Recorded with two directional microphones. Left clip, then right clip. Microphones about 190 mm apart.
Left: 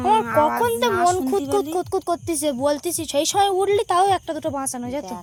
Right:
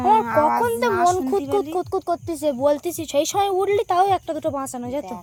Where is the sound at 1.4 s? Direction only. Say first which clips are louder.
Even; 15° left (ahead or behind).